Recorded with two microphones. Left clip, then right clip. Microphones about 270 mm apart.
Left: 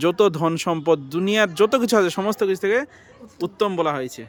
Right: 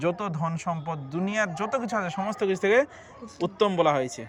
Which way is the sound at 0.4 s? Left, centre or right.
Left.